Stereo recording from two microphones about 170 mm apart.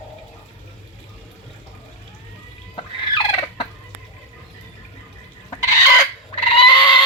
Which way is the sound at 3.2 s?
35° left (ahead or behind).